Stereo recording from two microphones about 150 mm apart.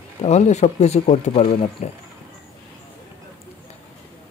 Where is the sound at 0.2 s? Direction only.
50° left (ahead or behind).